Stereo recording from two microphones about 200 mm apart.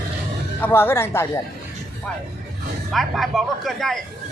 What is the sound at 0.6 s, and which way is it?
Speech, 10° left (ahead or behind).